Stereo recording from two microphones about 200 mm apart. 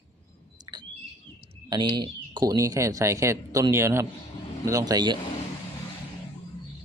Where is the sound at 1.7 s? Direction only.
20° right (ahead or behind).